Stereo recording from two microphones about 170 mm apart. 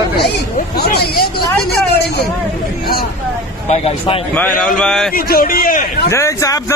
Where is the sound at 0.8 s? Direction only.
65° left (ahead or behind).